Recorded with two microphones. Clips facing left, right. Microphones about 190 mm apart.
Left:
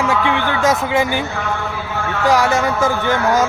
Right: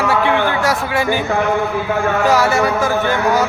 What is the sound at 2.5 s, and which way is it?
Speech, 20° left (ahead or behind).